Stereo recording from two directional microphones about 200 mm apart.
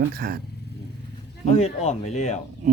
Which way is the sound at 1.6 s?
30° left (ahead or behind).